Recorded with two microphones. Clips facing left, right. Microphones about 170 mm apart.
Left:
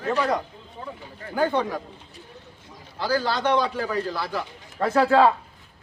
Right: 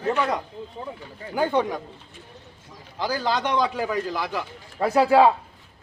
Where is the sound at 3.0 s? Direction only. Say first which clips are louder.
Left 1 dB; 15° right (ahead or behind).